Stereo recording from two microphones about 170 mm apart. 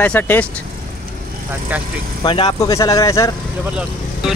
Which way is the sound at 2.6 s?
20° left (ahead or behind).